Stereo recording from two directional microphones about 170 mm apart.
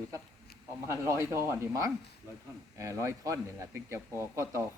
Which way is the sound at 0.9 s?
15° right (ahead or behind).